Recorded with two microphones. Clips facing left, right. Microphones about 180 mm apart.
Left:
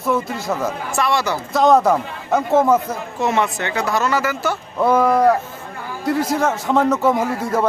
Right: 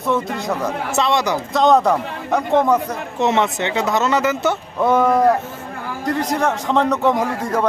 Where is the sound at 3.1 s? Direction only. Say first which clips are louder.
Right 2 dB; 20° right (ahead or behind).